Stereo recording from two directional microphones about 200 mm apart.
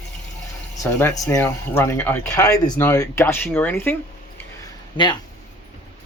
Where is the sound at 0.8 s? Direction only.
15° left (ahead or behind).